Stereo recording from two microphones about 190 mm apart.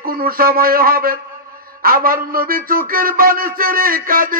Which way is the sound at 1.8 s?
50° right (ahead or behind).